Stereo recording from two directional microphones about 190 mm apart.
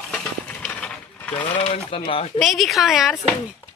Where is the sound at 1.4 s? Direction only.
35° left (ahead or behind).